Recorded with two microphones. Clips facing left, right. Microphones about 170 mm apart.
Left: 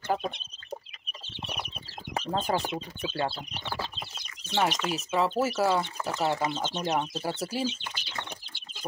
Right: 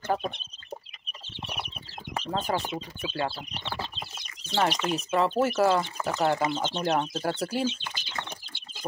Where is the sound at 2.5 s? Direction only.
30° left (ahead or behind).